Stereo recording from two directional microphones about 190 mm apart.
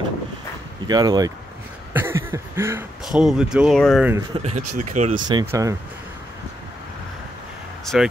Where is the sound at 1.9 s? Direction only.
10° right (ahead or behind).